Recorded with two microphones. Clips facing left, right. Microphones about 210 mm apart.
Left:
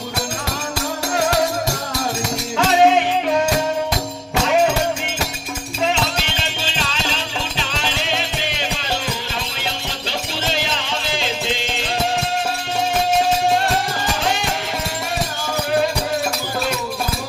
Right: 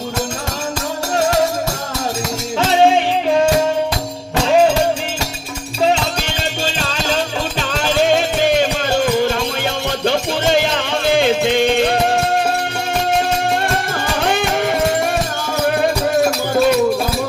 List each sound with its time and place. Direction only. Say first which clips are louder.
6.7 s music: right 4 dB; 45° right (ahead or behind)
14.2 s music: right 5 dB; 55° right (ahead or behind)